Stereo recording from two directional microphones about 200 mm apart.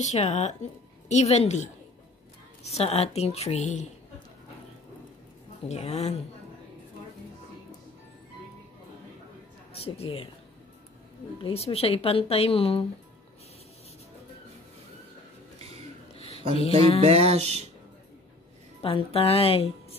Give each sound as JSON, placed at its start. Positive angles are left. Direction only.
{"t": 0.0, "sound": "a woman's voice", "side_deg": 35}
{"t": 5.7, "sound": "a woman's voice", "side_deg": 30}
{"t": 9.8, "sound": "speech", "side_deg": 30}
{"t": 11.4, "sound": "speech", "side_deg": 30}
{"t": 16.2, "sound": "a sound", "side_deg": 30}
{"t": 17.0, "sound": "music", "side_deg": -30}
{"t": 18.8, "sound": "speech", "side_deg": 25}